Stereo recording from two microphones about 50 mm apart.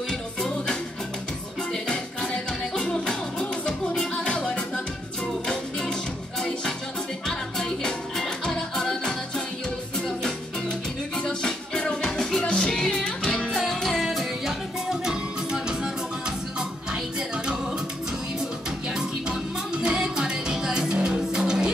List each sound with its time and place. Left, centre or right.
1.7 s music: centre
7.2 s music: centre
13.5 s music: centre
18.9 s music: centre